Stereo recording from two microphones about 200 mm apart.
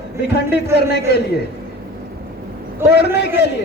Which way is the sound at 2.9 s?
55° left (ahead or behind).